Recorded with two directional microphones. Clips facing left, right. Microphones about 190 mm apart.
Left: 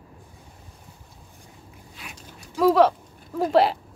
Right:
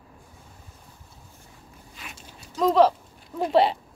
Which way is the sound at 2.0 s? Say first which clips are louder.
Left 1 dB; centre (ahead or behind).